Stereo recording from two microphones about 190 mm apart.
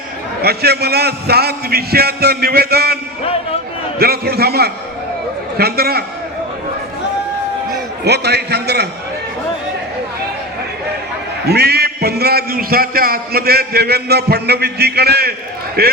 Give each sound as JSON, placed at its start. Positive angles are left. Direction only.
{"t": 0.4, "sound": "a man's voice", "side_deg": -55}
{"t": 8.0, "sound": "a man's voice", "side_deg": -60}
{"t": 11.4, "sound": "a man's voice", "side_deg": -55}